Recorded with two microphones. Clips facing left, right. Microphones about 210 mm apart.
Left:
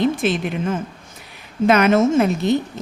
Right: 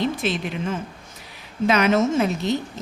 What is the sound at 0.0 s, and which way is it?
A woman's voice, 50° left (ahead or behind).